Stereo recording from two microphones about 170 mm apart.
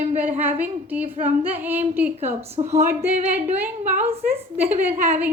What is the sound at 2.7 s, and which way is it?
A woman's voice, 15° right (ahead or behind).